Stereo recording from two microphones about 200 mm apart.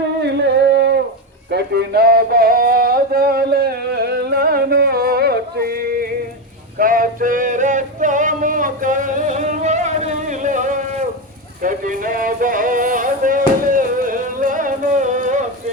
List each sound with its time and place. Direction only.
0.2 s a sound: 60° right (ahead or behind)
6.7 s male singing: 45° right (ahead or behind)
11.6 s music: 45° right (ahead or behind)